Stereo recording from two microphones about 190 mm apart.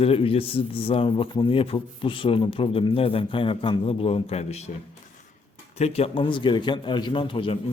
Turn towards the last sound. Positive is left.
turn(degrees=25)  # may be behind; listen again after turning